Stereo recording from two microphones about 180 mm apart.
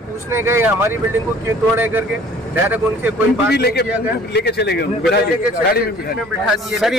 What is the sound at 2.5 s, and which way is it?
Speech, 10° right (ahead or behind).